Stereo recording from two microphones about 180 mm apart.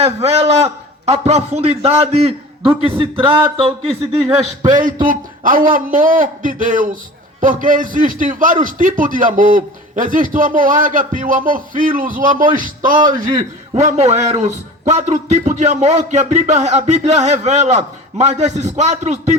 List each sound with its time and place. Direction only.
0.0 s a man's voice: 35° right (ahead or behind)
4.7 s a man's voice: 45° right (ahead or behind)